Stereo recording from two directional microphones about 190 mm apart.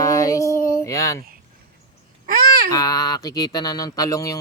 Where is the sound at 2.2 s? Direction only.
50° right (ahead or behind).